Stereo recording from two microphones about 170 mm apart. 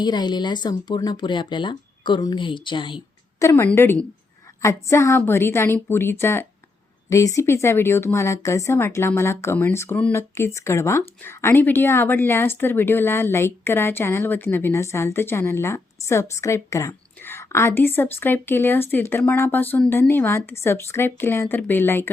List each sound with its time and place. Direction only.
0.0 s speech: 25° left (ahead or behind)
3.4 s speech: 15° left (ahead or behind)